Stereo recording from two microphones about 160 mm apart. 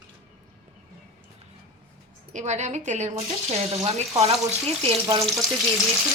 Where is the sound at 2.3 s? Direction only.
45° right (ahead or behind).